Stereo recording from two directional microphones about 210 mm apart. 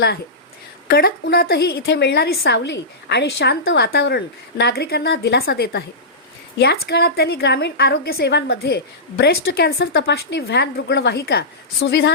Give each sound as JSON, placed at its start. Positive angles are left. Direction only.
{"t": 0.9, "sound": "a woman's voice", "side_deg": 50}